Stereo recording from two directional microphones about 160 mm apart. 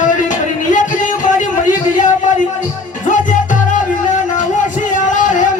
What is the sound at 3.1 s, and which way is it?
Music, 55° left (ahead or behind).